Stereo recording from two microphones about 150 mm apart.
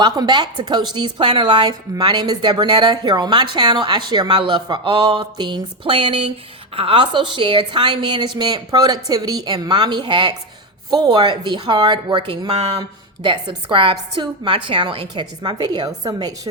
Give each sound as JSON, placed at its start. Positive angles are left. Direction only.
{"t": 0.0, "sound": "a woman's voice", "side_deg": -30}
{"t": 13.7, "sound": "a woman's voice", "side_deg": -35}